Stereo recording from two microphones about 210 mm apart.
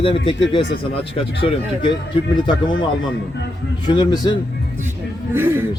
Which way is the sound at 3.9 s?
20° left (ahead or behind).